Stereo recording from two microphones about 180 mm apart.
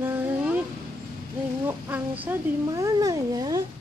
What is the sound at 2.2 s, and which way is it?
Speech, 15° right (ahead or behind).